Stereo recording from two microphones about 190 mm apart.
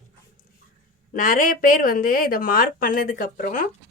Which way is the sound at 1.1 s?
45° left (ahead or behind).